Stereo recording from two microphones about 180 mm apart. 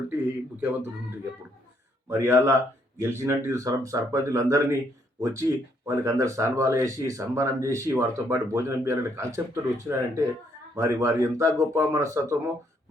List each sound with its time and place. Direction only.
0.1 s speech: 10° right (ahead or behind)